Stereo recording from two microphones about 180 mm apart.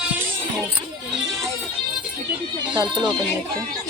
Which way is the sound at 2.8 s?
25° right (ahead or behind).